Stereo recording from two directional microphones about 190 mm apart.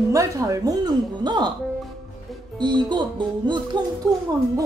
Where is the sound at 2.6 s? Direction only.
25° right (ahead or behind).